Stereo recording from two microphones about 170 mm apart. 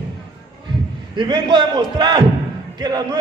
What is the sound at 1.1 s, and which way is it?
A man's voice, 25° right (ahead or behind).